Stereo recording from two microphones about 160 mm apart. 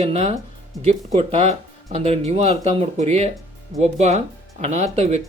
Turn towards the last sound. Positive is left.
turn(degrees=-40)  # may be behind; listen again after turning